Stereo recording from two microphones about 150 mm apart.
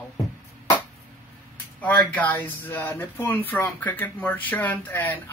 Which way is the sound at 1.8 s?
10° left (ahead or behind).